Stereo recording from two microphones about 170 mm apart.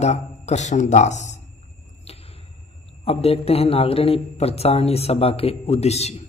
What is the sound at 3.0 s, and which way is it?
Speech, 35° left (ahead or behind).